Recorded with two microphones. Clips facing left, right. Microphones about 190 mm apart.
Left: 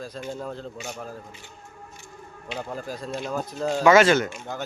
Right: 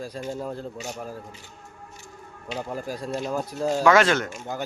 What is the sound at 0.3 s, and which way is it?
Speech, 10° right (ahead or behind).